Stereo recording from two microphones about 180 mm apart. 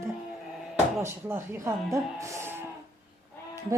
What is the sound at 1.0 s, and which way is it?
A woman's voice, 15° right (ahead or behind).